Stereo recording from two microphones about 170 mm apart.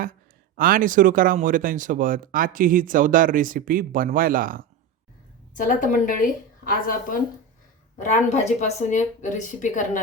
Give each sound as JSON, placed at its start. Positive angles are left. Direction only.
{"t": 0.0, "sound": "speech", "side_deg": -55}
{"t": 5.5, "sound": "a woman's voice", "side_deg": 50}
{"t": 7.9, "sound": "a woman's voice", "side_deg": 45}